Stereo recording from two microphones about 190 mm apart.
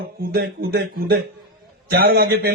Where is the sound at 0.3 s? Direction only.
50° right (ahead or behind).